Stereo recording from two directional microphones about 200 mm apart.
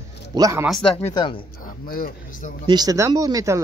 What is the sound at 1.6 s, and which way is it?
Speech, 45° left (ahead or behind).